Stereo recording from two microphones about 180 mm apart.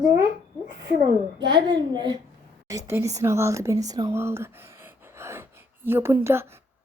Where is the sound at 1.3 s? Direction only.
25° right (ahead or behind).